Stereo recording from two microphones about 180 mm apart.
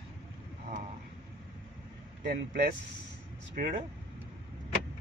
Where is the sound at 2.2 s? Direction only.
55° right (ahead or behind).